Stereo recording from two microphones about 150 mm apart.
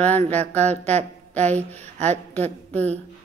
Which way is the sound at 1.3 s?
10° left (ahead or behind).